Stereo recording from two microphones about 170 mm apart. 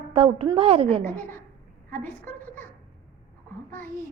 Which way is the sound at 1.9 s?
10° left (ahead or behind).